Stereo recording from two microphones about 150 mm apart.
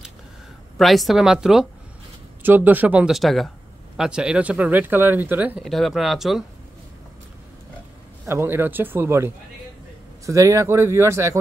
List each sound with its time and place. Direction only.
0.7 s a woman's voice: centre (ahead or behind)
5.6 s a woman's voice: centre (ahead or behind)
8.3 s speech: 15° right (ahead or behind)